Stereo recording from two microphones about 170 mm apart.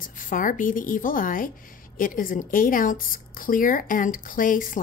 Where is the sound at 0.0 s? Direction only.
50° left (ahead or behind).